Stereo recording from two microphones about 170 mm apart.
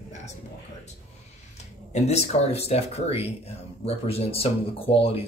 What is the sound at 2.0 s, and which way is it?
Speech, 40° left (ahead or behind).